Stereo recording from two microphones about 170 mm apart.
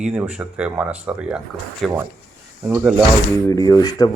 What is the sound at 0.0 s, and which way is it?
Speech, 5° right (ahead or behind).